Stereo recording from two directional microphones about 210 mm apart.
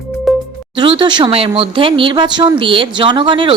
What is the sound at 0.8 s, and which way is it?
Speech, 25° right (ahead or behind).